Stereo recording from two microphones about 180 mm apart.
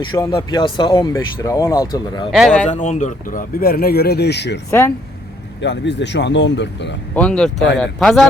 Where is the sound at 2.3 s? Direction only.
Centre (ahead or behind).